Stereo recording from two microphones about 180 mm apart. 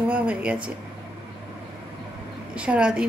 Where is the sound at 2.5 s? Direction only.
5° right (ahead or behind).